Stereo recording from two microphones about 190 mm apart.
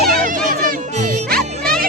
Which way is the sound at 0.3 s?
45° right (ahead or behind).